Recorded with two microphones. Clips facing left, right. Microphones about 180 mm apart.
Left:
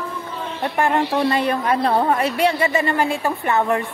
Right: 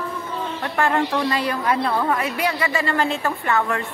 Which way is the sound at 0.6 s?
15° left (ahead or behind).